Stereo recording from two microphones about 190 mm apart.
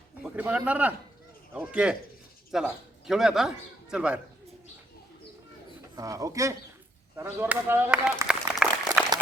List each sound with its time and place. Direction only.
0.2 s a man's voice: 10° right (ahead or behind)
6.0 s speech: 15° right (ahead or behind)
9.0 s a sound: centre (ahead or behind)